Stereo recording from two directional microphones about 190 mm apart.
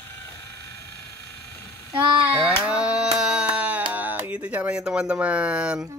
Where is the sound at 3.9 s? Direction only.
10° right (ahead or behind).